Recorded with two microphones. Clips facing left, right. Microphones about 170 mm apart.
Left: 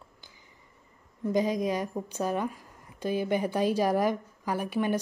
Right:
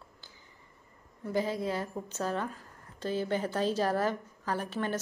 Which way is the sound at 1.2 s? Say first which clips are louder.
Left 5 dB; 15° left (ahead or behind).